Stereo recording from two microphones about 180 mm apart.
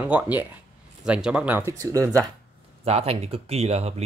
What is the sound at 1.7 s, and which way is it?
Speech, 15° right (ahead or behind).